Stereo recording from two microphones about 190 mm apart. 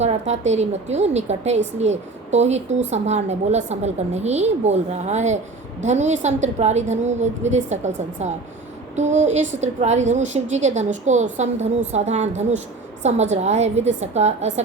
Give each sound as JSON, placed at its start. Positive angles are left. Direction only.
{"t": 0.0, "sound": "a woman's voice", "side_deg": -35}